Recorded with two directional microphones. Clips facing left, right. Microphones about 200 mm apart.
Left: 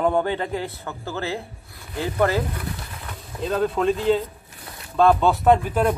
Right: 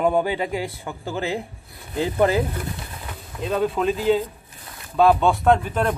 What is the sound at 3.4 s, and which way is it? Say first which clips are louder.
Speech: even; centre (ahead or behind).